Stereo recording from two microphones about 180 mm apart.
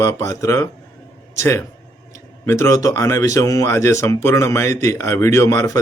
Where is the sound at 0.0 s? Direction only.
15° left (ahead or behind).